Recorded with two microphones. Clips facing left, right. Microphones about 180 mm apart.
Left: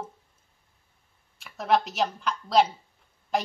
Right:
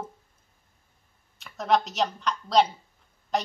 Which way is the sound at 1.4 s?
5° left (ahead or behind).